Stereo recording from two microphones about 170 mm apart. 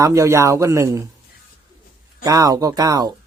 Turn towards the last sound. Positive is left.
turn(degrees=-20)  # may be behind; listen again after turning